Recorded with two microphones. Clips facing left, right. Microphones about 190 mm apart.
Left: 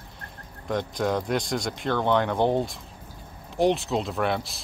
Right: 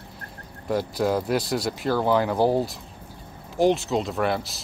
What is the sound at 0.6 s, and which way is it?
Speech, 5° right (ahead or behind).